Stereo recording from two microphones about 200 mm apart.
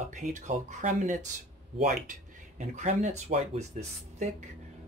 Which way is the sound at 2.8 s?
35° right (ahead or behind).